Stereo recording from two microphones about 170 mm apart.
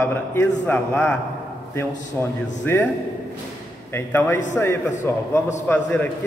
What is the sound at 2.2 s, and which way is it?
Speech, 10° left (ahead or behind).